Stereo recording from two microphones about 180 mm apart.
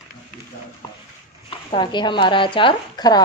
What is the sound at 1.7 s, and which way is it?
Speech, 25° left (ahead or behind).